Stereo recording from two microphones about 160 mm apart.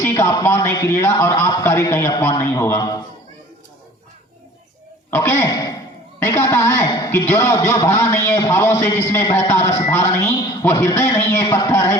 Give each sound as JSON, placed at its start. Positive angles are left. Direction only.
{"t": 0.0, "sound": "a man's voice", "side_deg": 15}
{"t": 5.1, "sound": "a man's voice", "side_deg": 15}